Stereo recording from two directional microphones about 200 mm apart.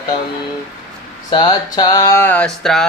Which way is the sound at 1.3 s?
20° left (ahead or behind).